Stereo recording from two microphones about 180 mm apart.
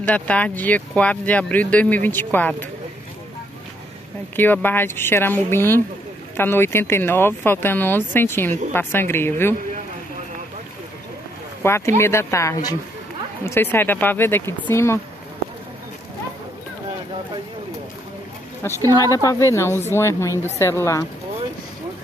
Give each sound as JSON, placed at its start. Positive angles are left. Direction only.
{"t": 0.0, "sound": "speech", "side_deg": 10}
{"t": 4.4, "sound": "speech", "side_deg": 10}
{"t": 11.6, "sound": "speech", "side_deg": 15}
{"t": 18.6, "sound": "a woman's voice", "side_deg": 15}